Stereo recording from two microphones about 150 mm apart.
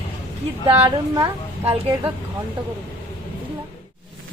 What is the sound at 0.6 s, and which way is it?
Speech, 15° right (ahead or behind).